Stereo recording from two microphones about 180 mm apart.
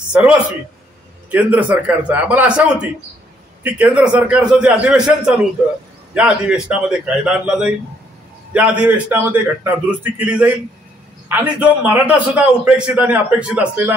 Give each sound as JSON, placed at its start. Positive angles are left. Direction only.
{"t": 0.1, "sound": "a man's voice", "side_deg": -5}
{"t": 3.6, "sound": "a man's voice", "side_deg": -10}